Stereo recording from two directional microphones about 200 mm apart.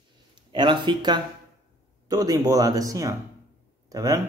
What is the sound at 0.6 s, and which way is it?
Speech, 25° right (ahead or behind).